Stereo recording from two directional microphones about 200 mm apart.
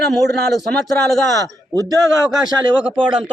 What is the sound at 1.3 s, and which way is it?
A man's voice, 20° right (ahead or behind).